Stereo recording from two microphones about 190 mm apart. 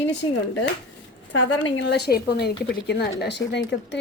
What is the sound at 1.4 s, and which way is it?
Speech, 70° left (ahead or behind).